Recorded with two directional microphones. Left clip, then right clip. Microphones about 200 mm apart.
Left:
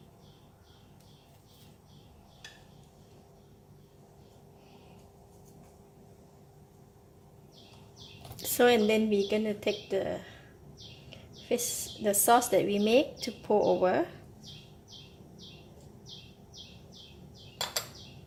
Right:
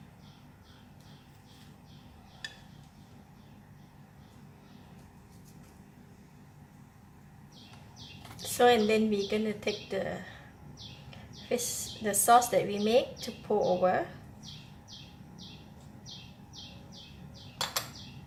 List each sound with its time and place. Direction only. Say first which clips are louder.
8.4 s a woman's voice: even; 40° left (ahead or behind)
11.4 s a woman's voice: left 1 dB; 35° left (ahead or behind)